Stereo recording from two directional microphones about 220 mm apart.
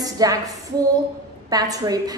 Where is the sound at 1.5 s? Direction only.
15° right (ahead or behind).